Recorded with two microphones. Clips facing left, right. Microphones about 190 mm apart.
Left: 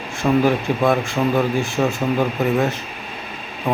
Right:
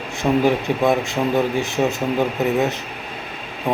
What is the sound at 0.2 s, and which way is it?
A man's voice, 20° right (ahead or behind).